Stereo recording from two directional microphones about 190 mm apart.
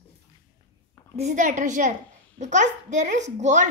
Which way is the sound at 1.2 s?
40° right (ahead or behind).